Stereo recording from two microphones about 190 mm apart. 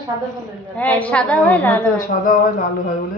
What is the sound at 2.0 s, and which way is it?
Speech, 45° left (ahead or behind).